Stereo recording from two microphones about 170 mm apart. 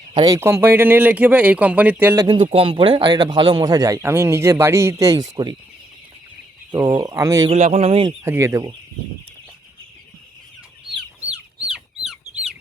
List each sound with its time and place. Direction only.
0.1 s speech: 25° right (ahead or behind)
0.3 s speech: 15° right (ahead or behind)
2.2 s speech: 30° right (ahead or behind)
6.7 s speech: 25° right (ahead or behind)
7.5 s speech: 40° right (ahead or behind)
8.2 s speech: 15° right (ahead or behind)
11.2 s chicken: 10° right (ahead or behind)